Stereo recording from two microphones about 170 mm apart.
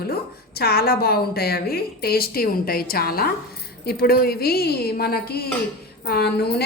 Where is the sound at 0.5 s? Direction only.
65° left (ahead or behind).